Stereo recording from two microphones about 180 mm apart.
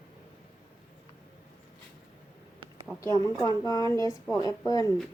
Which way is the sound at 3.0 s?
20° left (ahead or behind).